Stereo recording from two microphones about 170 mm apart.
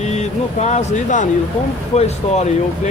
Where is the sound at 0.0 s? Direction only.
40° left (ahead or behind).